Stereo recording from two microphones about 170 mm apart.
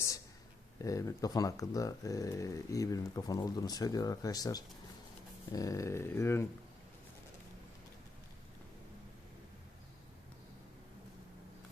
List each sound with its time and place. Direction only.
0.8 s speech: 20° left (ahead or behind)